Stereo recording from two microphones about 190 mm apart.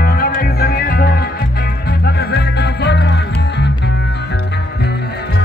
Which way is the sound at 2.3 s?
60° left (ahead or behind).